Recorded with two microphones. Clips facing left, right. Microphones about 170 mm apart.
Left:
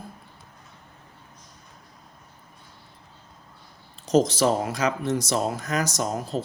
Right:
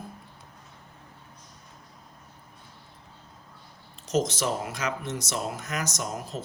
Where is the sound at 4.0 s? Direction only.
35° left (ahead or behind).